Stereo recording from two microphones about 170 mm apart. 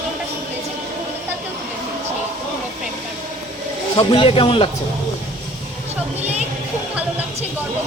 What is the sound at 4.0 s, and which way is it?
Speech, 30° left (ahead or behind).